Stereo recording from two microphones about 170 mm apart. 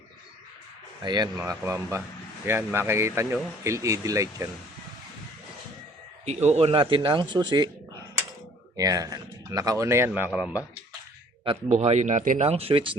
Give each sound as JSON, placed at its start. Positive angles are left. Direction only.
{"t": 1.0, "sound": "speech", "side_deg": -25}
{"t": 6.2, "sound": "speech", "side_deg": -40}
{"t": 8.7, "sound": "speech", "side_deg": -20}
{"t": 11.7, "sound": "speech", "side_deg": -45}